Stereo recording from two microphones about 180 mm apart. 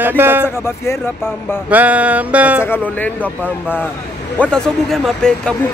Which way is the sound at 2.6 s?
10° left (ahead or behind).